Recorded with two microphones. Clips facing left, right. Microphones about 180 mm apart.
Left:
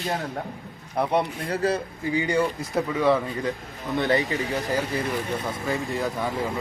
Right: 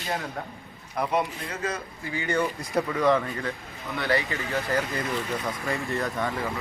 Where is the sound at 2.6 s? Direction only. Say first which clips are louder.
Left 1 dB; 5° left (ahead or behind).